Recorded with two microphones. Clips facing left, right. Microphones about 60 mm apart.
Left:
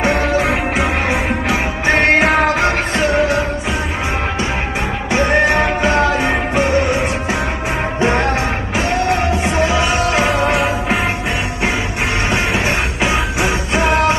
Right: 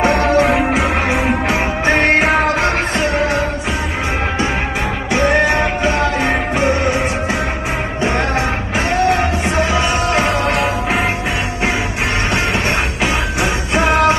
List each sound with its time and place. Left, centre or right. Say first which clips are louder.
0.0 s music: right 3 dB; centre
5.5 s music: left 1 dB; centre
10.1 s music: left 1 dB; centre
12.3 s music: even; centre
13.7 s music: right 1 dB; right